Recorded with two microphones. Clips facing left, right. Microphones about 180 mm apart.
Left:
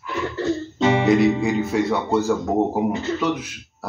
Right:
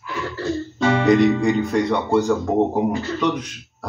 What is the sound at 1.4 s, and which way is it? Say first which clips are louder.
Speech: right 2 dB; 5° left (ahead or behind).